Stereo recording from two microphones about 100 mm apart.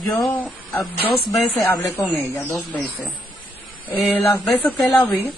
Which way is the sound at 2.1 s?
25° left (ahead or behind).